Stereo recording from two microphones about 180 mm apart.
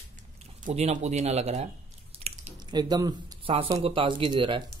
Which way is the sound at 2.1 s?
35° right (ahead or behind).